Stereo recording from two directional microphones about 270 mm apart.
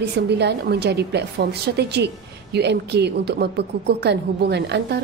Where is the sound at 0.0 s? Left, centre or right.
Right.